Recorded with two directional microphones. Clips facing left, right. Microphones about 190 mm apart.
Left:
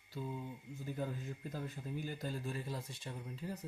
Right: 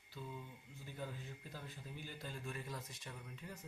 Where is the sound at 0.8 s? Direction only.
45° left (ahead or behind).